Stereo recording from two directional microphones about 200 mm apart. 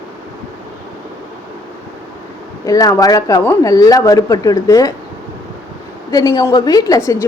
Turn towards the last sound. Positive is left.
turn(degrees=15)  # may be behind; listen again after turning